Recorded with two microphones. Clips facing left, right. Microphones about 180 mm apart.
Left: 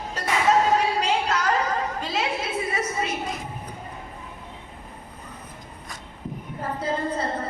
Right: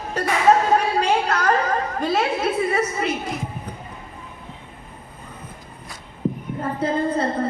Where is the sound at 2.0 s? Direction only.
55° right (ahead or behind).